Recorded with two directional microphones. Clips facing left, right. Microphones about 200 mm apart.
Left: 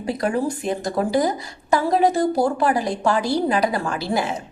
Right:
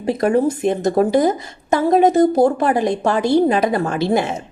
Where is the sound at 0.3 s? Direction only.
20° right (ahead or behind).